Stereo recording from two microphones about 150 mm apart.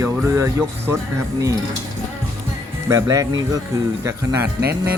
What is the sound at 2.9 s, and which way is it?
Speech, 20° right (ahead or behind).